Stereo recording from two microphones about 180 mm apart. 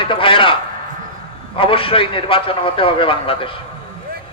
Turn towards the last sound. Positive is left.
turn(degrees=30)  # may be behind; listen again after turning